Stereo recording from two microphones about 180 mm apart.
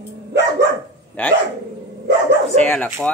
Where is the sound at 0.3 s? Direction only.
70° right (ahead or behind).